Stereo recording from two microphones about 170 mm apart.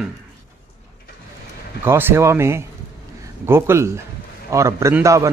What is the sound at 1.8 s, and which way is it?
A man's voice, 15° right (ahead or behind).